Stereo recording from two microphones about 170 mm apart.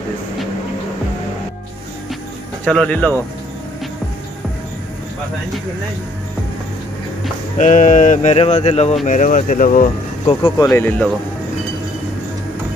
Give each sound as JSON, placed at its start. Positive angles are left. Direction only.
{"t": 2.6, "sound": "speech", "side_deg": 5}
{"t": 7.5, "sound": "speech", "side_deg": 50}
{"t": 10.2, "sound": "speech", "side_deg": 25}
{"t": 10.7, "sound": "speech", "side_deg": 10}